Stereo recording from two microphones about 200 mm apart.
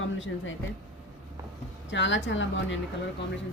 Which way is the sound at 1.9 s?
65° left (ahead or behind).